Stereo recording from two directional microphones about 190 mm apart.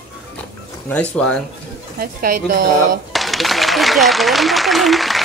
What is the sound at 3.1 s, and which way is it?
Speech, centre (ahead or behind).